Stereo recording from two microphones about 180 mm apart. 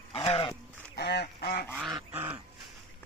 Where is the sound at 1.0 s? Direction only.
65° left (ahead or behind).